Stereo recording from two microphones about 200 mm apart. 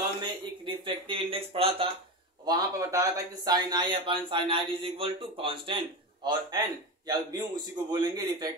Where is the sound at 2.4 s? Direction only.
15° right (ahead or behind).